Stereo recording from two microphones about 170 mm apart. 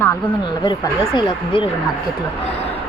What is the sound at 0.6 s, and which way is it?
Speech, 25° left (ahead or behind).